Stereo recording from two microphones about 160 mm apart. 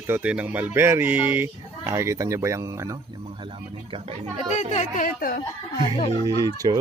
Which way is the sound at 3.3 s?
35° right (ahead or behind).